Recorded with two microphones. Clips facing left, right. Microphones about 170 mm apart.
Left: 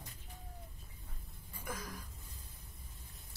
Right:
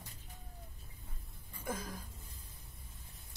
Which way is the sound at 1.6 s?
25° right (ahead or behind).